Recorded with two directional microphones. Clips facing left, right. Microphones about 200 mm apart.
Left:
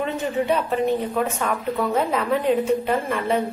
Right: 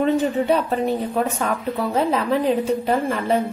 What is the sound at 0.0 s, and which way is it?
Speech, 35° right (ahead or behind).